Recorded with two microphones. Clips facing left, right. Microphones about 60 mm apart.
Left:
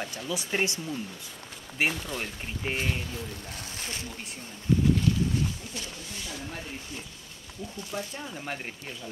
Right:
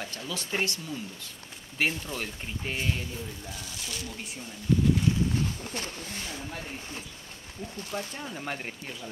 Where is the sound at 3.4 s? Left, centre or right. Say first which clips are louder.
Left 1 dB; left.